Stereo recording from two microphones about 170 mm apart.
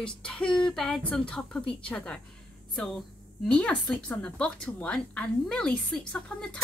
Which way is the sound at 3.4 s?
5° left (ahead or behind).